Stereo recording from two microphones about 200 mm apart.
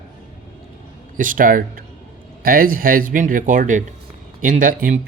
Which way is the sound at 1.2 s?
40° right (ahead or behind).